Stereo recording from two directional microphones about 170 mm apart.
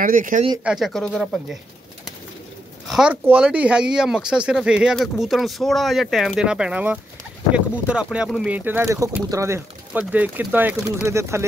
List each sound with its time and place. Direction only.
0.0 s speech: 50° right (ahead or behind)
0.7 s speech: centre (ahead or behind)
2.9 s speech: 5° right (ahead or behind)